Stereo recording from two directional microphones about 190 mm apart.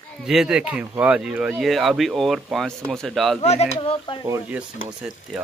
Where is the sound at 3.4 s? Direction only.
35° left (ahead or behind).